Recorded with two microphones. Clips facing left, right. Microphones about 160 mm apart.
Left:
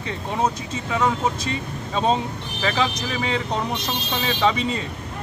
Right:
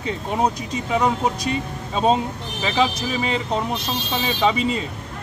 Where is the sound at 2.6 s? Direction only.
15° right (ahead or behind).